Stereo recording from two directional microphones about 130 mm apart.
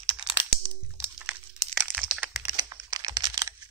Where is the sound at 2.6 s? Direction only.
25° right (ahead or behind).